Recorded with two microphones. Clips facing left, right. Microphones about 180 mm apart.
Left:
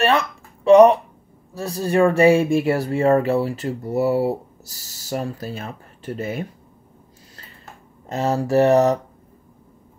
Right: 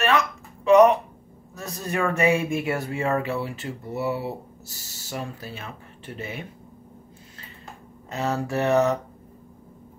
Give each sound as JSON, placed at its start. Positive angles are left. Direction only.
{"t": 0.7, "sound": "speech", "side_deg": 35}
{"t": 8.1, "sound": "speech", "side_deg": 35}